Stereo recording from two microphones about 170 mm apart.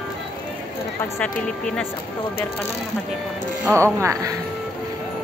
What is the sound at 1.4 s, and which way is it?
Speech, 5° left (ahead or behind).